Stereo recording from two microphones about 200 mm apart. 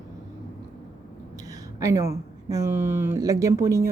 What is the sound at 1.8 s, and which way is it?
Speech, 15° right (ahead or behind).